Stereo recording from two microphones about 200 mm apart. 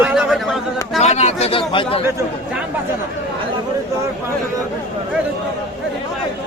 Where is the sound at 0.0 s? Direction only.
5° right (ahead or behind).